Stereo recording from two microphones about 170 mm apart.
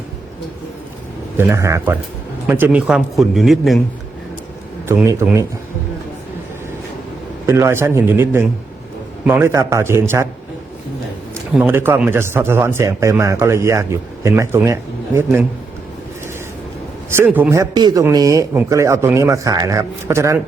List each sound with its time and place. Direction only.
1.4 s a man's voice: 15° right (ahead or behind)
4.9 s speech: 10° right (ahead or behind)
7.4 s speech: 15° right (ahead or behind)
11.5 s speech: 10° right (ahead or behind)
17.2 s speech: 10° right (ahead or behind)